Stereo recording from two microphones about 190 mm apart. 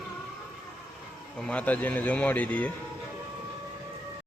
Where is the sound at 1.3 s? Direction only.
5° left (ahead or behind).